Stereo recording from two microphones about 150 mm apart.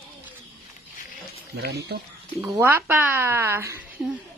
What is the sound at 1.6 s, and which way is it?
Speech, 90° right.